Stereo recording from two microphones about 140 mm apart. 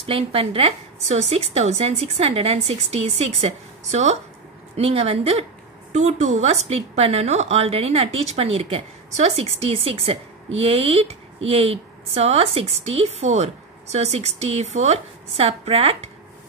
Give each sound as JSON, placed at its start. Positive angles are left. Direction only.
{"t": 0.0, "sound": "a woman's voice", "side_deg": -40}